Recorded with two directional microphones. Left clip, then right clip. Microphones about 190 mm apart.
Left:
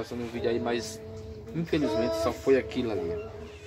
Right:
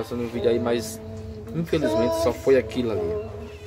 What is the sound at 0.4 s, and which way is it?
Speech, centre (ahead or behind).